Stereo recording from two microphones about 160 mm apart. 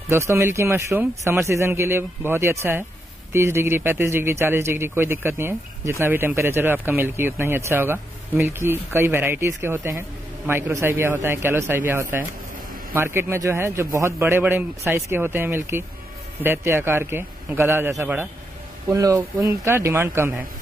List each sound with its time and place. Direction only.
0.1 s speech: 15° right (ahead or behind)